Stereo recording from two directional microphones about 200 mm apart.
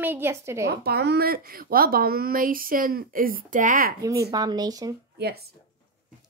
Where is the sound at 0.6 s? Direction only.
55° right (ahead or behind).